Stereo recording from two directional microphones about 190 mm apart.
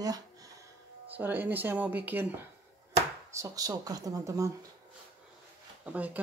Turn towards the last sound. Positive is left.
turn(degrees=-5)  # may be behind; listen again after turning